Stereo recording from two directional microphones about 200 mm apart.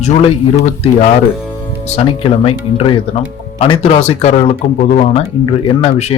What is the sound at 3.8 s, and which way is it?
A man's voice, 30° left (ahead or behind).